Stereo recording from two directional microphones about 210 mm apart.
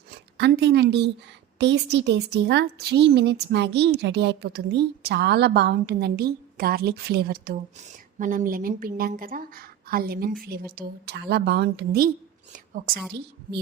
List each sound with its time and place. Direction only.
0.3 s a woman's voice: 55° right (ahead or behind)